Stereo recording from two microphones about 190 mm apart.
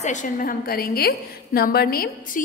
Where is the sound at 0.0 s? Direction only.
40° left (ahead or behind).